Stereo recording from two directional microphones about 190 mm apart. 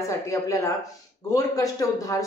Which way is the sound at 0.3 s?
15° left (ahead or behind).